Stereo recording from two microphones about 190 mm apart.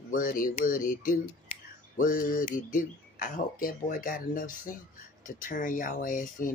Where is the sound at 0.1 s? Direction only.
45° left (ahead or behind).